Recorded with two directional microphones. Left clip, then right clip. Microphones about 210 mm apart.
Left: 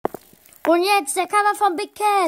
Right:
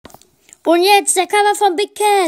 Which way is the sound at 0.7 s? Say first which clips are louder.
Right 6 dB; 30° left (ahead or behind).